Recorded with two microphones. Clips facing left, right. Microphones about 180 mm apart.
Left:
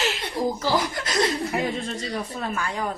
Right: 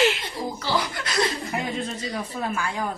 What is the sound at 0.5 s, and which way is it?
Chuckle, 45° left (ahead or behind).